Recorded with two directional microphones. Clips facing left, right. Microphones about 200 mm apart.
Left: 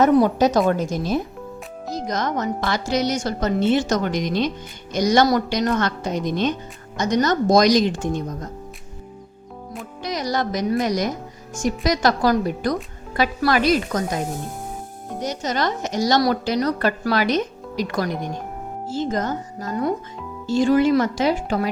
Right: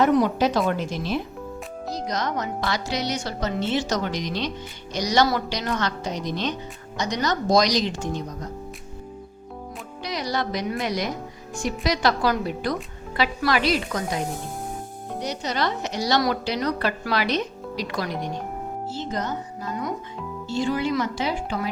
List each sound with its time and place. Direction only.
0.0 s a woman's voice: 45° left (ahead or behind)
10.0 s a woman's voice: 45° left (ahead or behind)
15.2 s a woman's voice: 45° left (ahead or behind)
20.9 s a woman's voice: 50° left (ahead or behind)